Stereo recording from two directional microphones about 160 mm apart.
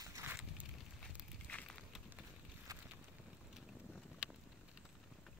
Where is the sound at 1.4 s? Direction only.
10° left (ahead or behind).